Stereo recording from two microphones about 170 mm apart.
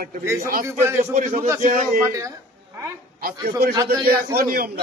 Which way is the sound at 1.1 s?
50° right (ahead or behind).